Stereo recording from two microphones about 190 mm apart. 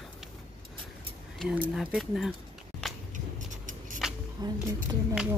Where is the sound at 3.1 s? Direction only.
40° right (ahead or behind).